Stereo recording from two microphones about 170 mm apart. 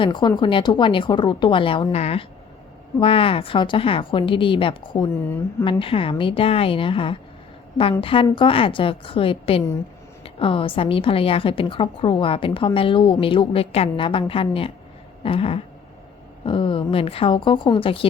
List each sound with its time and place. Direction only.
0.0 s a woman's voice: 25° left (ahead or behind)